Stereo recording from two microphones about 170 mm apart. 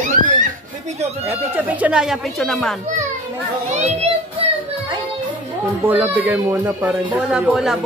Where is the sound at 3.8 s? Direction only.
40° right (ahead or behind).